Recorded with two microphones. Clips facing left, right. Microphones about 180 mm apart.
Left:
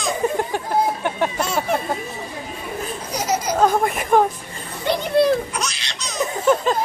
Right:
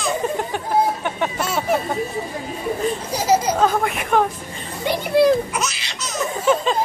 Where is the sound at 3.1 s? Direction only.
30° right (ahead or behind).